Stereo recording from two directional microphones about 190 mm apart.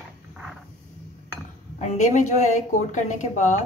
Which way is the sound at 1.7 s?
40° left (ahead or behind).